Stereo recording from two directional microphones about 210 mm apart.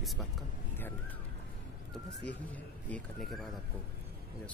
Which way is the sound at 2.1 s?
55° left (ahead or behind).